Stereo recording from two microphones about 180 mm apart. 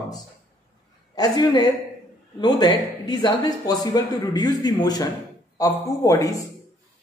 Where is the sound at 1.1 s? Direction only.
20° left (ahead or behind).